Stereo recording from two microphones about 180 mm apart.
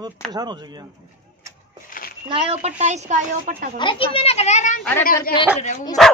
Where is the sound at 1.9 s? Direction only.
50° left (ahead or behind).